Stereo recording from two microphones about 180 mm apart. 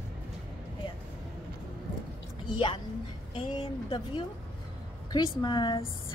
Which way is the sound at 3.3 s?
30° left (ahead or behind).